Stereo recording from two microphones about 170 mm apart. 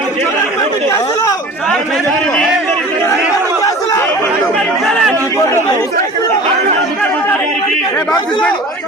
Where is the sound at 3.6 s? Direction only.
20° left (ahead or behind).